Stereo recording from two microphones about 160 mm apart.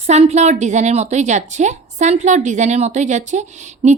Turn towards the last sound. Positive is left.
turn(degrees=-45)  # may be behind; listen again after turning